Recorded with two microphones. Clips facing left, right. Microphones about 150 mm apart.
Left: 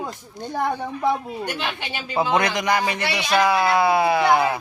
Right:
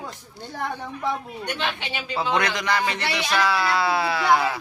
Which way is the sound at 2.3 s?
20° left (ahead or behind).